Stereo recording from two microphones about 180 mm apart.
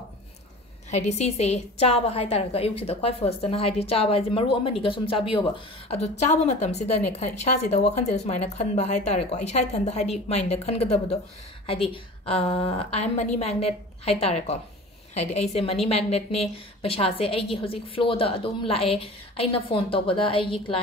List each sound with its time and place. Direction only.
0.8 s speech: 40° left (ahead or behind)